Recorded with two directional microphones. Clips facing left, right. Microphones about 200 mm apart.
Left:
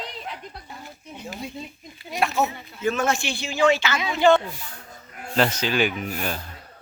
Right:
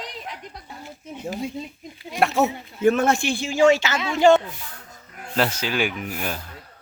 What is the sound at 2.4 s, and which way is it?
Speech, 60° right (ahead or behind).